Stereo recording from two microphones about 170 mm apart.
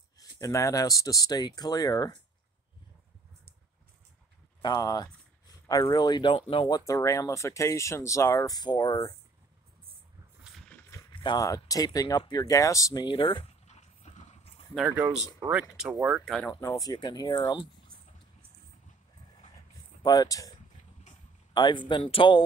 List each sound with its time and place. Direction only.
0.4 s speech: 20° left (ahead or behind)
4.6 s speech: 25° left (ahead or behind)
6.9 s speech: 20° left (ahead or behind)
10.7 s a sound: 10° left (ahead or behind)
11.1 s speech: 25° left (ahead or behind)
14.8 s speech: 10° right (ahead or behind)
16.6 s speech: 20° left (ahead or behind)
20.0 s speech: 20° left (ahead or behind)
21.5 s speech: 25° left (ahead or behind)